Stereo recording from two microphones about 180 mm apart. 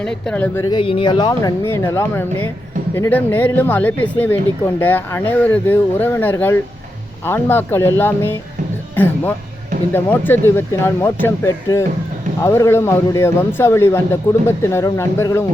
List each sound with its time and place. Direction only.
0.0 s speech: 5° left (ahead or behind)
0.7 s speech: 30° left (ahead or behind); by 8.4 s 10° left (ahead or behind)
9.9 s speech: 10° left (ahead or behind)